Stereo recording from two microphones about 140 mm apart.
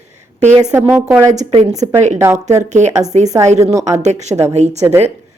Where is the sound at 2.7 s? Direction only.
55° right (ahead or behind).